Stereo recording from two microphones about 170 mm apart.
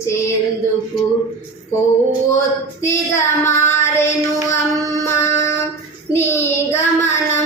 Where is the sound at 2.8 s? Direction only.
15° left (ahead or behind).